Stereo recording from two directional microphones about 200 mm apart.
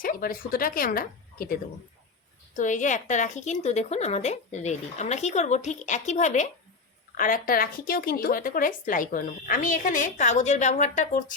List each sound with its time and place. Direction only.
0.0 s speech: 45° left (ahead or behind)
2.6 s speech: 40° left (ahead or behind)